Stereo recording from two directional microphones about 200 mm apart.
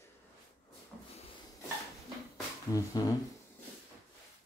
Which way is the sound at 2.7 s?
15° left (ahead or behind).